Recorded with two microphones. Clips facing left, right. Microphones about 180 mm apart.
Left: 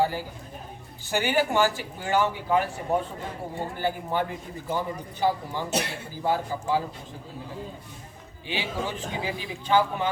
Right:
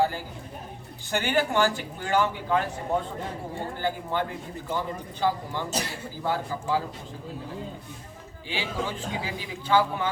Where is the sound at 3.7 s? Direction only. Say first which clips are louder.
Left 1 dB; 15° left (ahead or behind).